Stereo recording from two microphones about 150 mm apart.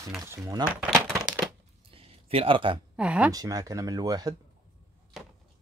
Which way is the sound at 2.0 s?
40° right (ahead or behind).